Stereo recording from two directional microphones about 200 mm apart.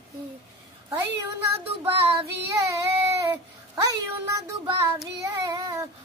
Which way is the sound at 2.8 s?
15° right (ahead or behind).